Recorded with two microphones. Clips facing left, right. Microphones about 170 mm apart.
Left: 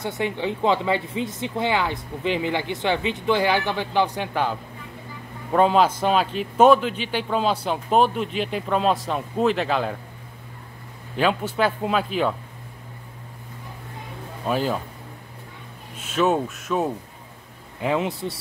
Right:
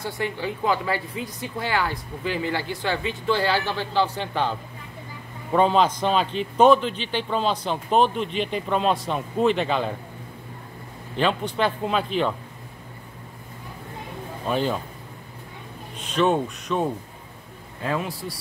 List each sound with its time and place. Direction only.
0.0 s a man's voice: 20° left (ahead or behind); by 9.9 s centre (ahead or behind)
11.1 s a man's voice: 5° left (ahead or behind)
14.5 s a man's voice: 5° left (ahead or behind)
16.0 s speech: 5° left (ahead or behind)
17.8 s speech: 20° left (ahead or behind)